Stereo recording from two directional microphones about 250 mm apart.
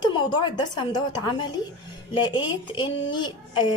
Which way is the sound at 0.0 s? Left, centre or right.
Centre.